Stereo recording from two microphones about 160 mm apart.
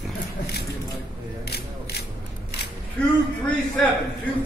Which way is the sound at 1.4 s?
90° left.